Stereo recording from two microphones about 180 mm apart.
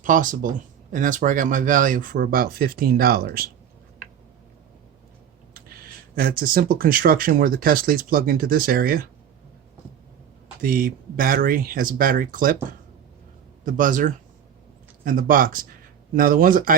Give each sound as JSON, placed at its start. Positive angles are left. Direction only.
{"t": 0.0, "sound": "speech", "side_deg": -45}
{"t": 6.1, "sound": "speech", "side_deg": -55}
{"t": 10.6, "sound": "speech", "side_deg": -50}
{"t": 13.7, "sound": "speech", "side_deg": -50}